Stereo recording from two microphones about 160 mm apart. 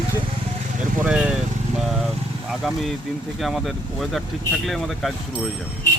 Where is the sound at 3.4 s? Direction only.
Centre (ahead or behind).